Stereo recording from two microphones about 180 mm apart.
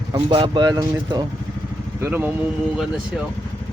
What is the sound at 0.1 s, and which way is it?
Speech, 25° right (ahead or behind).